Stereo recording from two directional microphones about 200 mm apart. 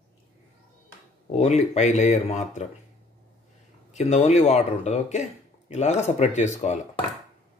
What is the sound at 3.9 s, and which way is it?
Speech, 35° left (ahead or behind).